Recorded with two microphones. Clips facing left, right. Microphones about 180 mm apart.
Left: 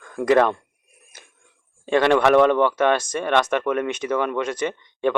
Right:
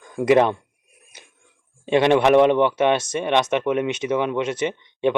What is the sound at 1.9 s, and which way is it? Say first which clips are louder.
Speech: right 1 dB; 20° right (ahead or behind).